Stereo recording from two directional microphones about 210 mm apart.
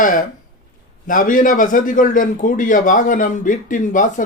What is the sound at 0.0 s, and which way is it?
A man's voice, 40° left (ahead or behind).